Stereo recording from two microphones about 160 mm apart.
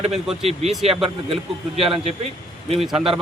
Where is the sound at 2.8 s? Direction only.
Centre (ahead or behind).